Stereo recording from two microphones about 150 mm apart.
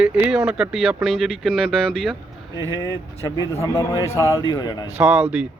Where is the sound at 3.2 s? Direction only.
25° left (ahead or behind).